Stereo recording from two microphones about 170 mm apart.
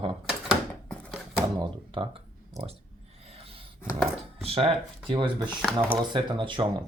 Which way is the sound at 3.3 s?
35° right (ahead or behind).